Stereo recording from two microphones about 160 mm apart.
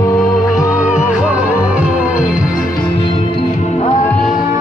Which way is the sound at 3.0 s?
35° left (ahead or behind).